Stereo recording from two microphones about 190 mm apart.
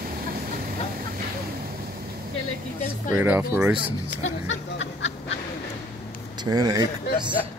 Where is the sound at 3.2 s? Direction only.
10° right (ahead or behind).